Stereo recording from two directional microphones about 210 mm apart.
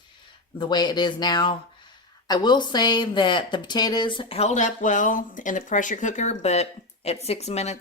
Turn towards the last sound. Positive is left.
turn(degrees=30)  # may be behind; listen again after turning